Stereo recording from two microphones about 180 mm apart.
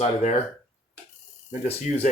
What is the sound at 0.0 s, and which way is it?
Speech, 40° left (ahead or behind).